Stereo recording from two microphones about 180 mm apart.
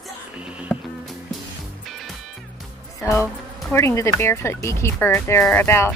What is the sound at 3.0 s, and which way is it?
Insect, 15° left (ahead or behind).